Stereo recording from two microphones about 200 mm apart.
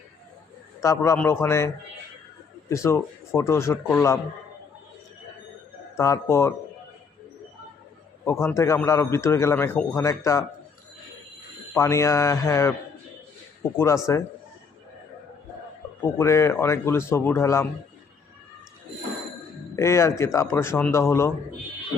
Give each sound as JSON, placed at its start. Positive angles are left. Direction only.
{"t": 0.8, "sound": "a man's voice", "side_deg": 15}
{"t": 6.0, "sound": "a man's voice", "side_deg": 15}
{"t": 8.2, "sound": "a man's voice", "side_deg": 10}
{"t": 11.7, "sound": "a man's voice", "side_deg": 15}
{"t": 13.7, "sound": "a man's voice", "side_deg": 15}
{"t": 16.1, "sound": "a man's voice", "side_deg": 15}
{"t": 19.7, "sound": "a man's voice", "side_deg": 15}